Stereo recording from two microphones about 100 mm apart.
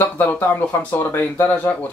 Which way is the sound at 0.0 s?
20° left (ahead or behind).